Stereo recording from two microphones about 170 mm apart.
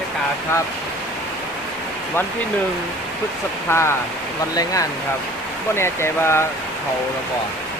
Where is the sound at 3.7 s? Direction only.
15° left (ahead or behind).